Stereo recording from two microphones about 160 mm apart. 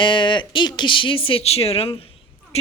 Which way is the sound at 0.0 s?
30° left (ahead or behind).